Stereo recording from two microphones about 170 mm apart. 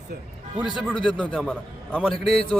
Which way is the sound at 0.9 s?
30° left (ahead or behind).